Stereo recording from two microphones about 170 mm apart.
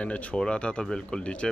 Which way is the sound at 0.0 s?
5° left (ahead or behind).